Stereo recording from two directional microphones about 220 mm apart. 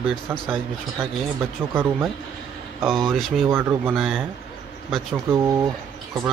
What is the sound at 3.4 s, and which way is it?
Speech, 10° right (ahead or behind).